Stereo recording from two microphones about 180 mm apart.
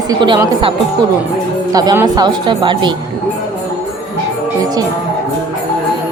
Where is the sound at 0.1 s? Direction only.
25° right (ahead or behind).